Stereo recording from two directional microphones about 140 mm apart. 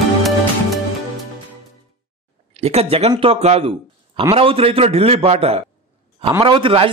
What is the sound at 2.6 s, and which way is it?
A man's voice, 50° right (ahead or behind).